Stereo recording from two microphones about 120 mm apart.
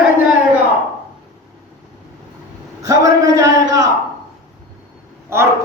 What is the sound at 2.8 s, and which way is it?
A man's voice, 30° right (ahead or behind).